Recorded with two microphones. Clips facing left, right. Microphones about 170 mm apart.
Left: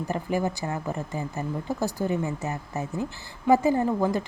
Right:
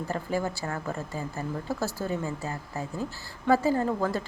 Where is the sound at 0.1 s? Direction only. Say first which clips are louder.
Left 3 dB; 15° left (ahead or behind).